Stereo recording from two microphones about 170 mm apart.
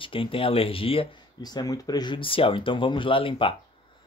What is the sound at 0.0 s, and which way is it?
Speech, 30° left (ahead or behind).